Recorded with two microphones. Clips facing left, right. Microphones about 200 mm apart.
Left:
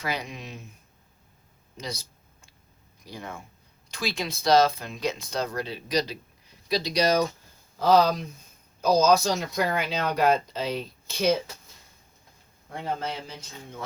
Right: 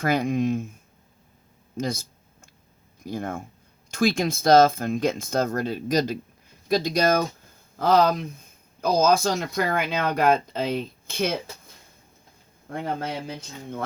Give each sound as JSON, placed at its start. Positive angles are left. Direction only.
{"t": 0.0, "sound": "speech", "side_deg": -50}
{"t": 1.7, "sound": "a sound", "side_deg": -50}
{"t": 3.0, "sound": "speech", "side_deg": -50}
{"t": 12.7, "sound": "speech", "side_deg": -55}